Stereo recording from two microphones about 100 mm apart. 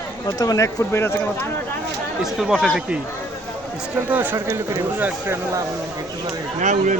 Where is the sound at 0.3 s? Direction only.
35° left (ahead or behind).